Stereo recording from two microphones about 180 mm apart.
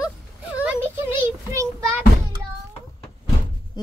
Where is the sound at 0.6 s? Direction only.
10° right (ahead or behind).